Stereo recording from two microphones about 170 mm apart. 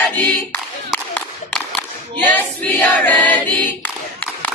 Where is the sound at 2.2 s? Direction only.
10° left (ahead or behind).